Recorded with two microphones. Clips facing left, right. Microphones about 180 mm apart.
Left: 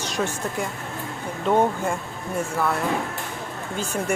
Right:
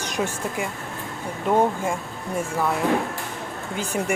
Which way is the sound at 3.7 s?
15° right (ahead or behind).